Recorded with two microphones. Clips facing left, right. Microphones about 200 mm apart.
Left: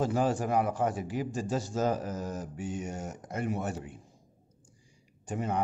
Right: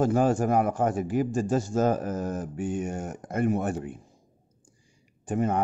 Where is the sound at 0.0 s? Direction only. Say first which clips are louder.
Right 5 dB; 50° right (ahead or behind).